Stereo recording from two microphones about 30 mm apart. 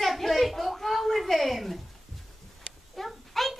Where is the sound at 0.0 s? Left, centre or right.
Centre.